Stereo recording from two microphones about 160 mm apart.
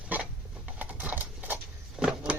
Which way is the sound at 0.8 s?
10° right (ahead or behind).